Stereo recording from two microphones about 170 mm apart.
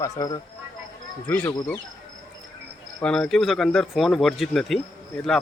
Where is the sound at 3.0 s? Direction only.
5° left (ahead or behind).